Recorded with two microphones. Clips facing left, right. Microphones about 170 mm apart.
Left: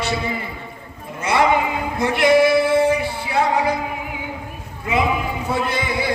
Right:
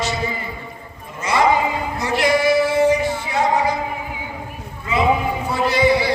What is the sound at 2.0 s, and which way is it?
Female singing, 55° left (ahead or behind).